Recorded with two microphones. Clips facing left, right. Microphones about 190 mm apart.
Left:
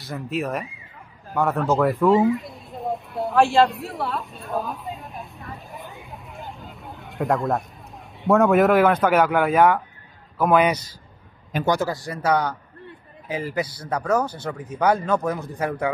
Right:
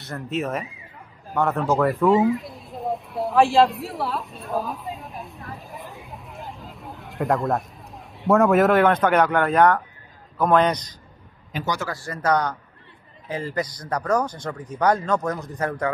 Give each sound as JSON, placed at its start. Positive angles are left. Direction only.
{"t": 0.0, "sound": "speech", "side_deg": 0}
{"t": 1.8, "sound": "a sound", "side_deg": 0}
{"t": 8.2, "sound": "speech", "side_deg": 0}
{"t": 11.5, "sound": "speech", "side_deg": 50}
{"t": 11.9, "sound": "speech", "side_deg": 15}
{"t": 13.6, "sound": "speech", "side_deg": 5}